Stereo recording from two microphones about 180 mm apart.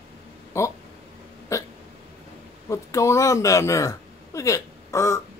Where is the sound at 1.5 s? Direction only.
15° left (ahead or behind).